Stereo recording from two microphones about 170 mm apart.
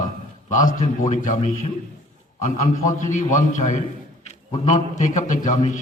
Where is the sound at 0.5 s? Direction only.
50° left (ahead or behind).